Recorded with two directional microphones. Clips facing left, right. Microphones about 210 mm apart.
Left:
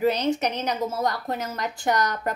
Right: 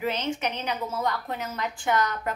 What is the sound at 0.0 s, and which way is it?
A woman's voice, 40° left (ahead or behind).